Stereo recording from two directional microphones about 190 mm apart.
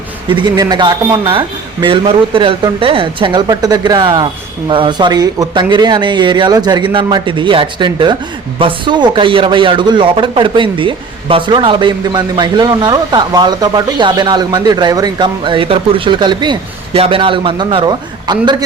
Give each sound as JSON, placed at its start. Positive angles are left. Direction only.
{"t": 0.3, "sound": "speech", "side_deg": -20}